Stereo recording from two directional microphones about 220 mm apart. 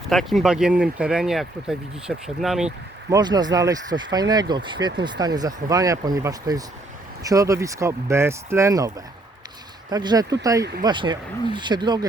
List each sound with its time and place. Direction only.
0.1 s speech: centre (ahead or behind)
3.1 s speech: 20° right (ahead or behind)
9.9 s speech: 20° right (ahead or behind)